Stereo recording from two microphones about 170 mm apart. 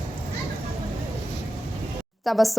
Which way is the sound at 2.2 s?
Centre (ahead or behind).